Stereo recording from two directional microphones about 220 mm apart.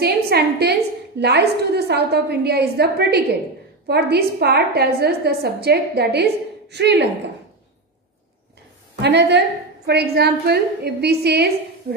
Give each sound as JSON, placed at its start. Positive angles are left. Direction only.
{"t": 0.0, "sound": "a woman's voice", "side_deg": -45}
{"t": 9.0, "sound": "a woman's voice", "side_deg": -50}